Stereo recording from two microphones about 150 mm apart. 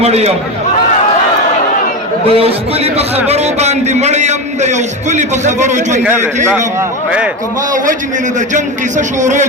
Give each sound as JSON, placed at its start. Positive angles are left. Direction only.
{"t": 0.0, "sound": "a man's voice", "side_deg": -45}
{"t": 2.2, "sound": "a man's voice", "side_deg": -40}
{"t": 6.0, "sound": "a man's voice", "side_deg": -15}
{"t": 8.4, "sound": "a man's voice", "side_deg": -55}